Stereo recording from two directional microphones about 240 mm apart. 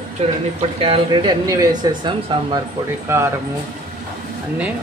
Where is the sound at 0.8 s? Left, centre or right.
Right.